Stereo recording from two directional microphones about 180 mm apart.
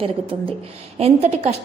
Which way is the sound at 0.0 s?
30° right (ahead or behind).